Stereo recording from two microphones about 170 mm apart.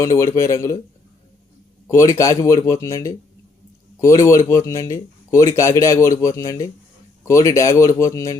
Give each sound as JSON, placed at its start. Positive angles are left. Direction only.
{"t": 0.0, "sound": "speech", "side_deg": 20}
{"t": 1.9, "sound": "speech", "side_deg": 20}